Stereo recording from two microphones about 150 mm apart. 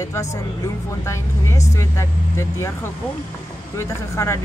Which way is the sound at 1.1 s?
20° left (ahead or behind).